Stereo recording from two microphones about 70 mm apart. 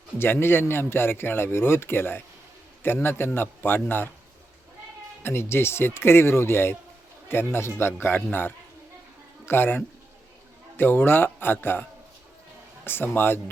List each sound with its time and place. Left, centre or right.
0.2 s a man's voice: left
5.2 s a man's voice: left